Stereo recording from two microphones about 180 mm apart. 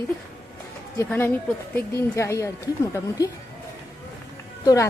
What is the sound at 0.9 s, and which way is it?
A woman's voice, 10° left (ahead or behind).